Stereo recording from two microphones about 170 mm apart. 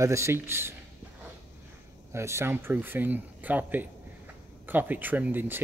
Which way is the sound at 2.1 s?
15° right (ahead or behind).